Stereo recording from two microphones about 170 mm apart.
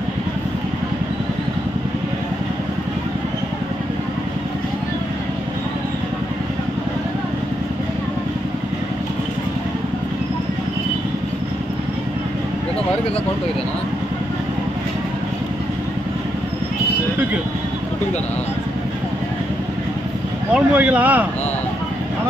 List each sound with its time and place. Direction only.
20.5 s speech: 10° right (ahead or behind)